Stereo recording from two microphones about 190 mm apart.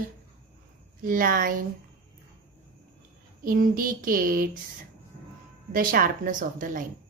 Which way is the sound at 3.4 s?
50° right (ahead or behind).